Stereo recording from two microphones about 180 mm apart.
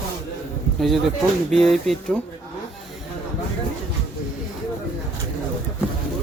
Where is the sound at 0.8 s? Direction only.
Centre (ahead or behind).